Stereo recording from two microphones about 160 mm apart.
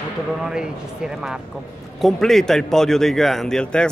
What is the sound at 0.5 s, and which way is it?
Speech, 5° right (ahead or behind).